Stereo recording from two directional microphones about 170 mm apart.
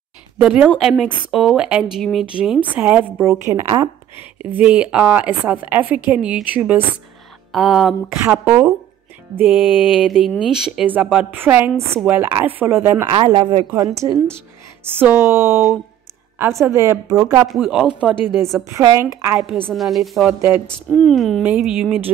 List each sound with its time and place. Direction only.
0.4 s a woman's voice: 5° right (ahead or behind); by 3.9 s 20° right (ahead or behind)
4.4 s a woman's voice: 10° right (ahead or behind)
13.1 s speech: 30° right (ahead or behind)
13.7 s a woman's voice: 20° right (ahead or behind)
17.5 s speech: centre (ahead or behind)
18.6 s a woman's voice: 20° right (ahead or behind)
19.7 s speech: centre (ahead or behind)